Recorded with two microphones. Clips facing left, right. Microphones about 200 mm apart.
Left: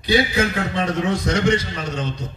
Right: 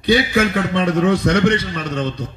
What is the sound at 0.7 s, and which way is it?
A man's voice, 60° right (ahead or behind).